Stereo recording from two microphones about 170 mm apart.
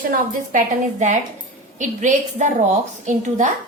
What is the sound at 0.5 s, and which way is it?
A woman's voice, 45° right (ahead or behind).